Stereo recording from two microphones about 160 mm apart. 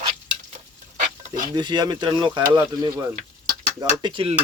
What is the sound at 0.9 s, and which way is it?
Stir, 55° right (ahead or behind).